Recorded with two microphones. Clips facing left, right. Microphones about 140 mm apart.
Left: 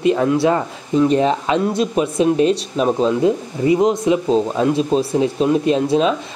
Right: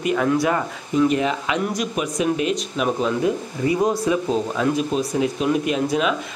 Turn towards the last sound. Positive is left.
turn(degrees=30)  # may be behind; listen again after turning